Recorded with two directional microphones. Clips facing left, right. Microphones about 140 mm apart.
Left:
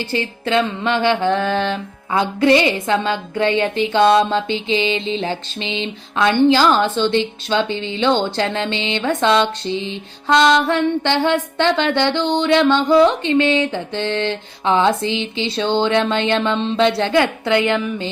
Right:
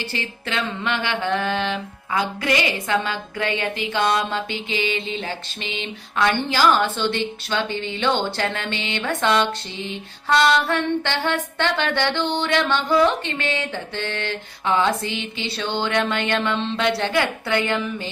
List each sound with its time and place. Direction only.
0.1 s a woman's voice: 30° left (ahead or behind)